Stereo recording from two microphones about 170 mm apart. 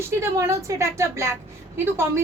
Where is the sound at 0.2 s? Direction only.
15° right (ahead or behind).